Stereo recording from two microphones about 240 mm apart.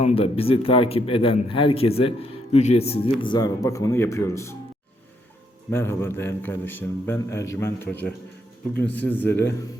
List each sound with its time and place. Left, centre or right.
0.0 s a man's voice: left
5.7 s a man's voice: centre